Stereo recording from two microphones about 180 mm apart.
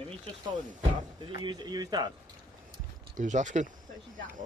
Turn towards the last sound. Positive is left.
turn(degrees=-40)  # may be behind; listen again after turning